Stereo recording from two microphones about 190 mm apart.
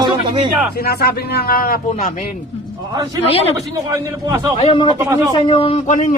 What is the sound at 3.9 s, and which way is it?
Speech, 20° right (ahead or behind).